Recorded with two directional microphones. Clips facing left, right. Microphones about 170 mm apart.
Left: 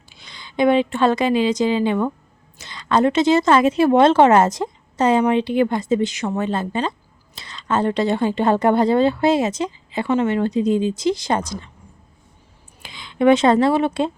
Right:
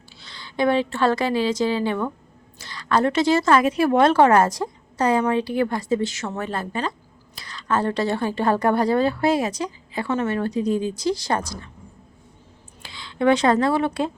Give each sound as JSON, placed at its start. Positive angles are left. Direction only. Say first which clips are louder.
{"t": 0.1, "sound": "a woman's voice", "louder": "left 1 dB", "side_deg": 15}
{"t": 12.8, "sound": "speech", "louder": "left 4 dB", "side_deg": 20}